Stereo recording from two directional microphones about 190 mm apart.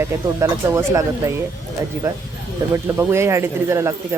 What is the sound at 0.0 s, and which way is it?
Speech, 15° right (ahead or behind).